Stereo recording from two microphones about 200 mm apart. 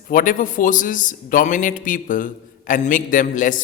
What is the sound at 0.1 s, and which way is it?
A man's voice, 40° left (ahead or behind).